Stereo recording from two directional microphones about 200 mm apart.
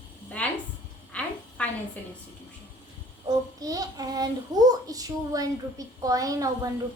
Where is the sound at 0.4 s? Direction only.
5° left (ahead or behind).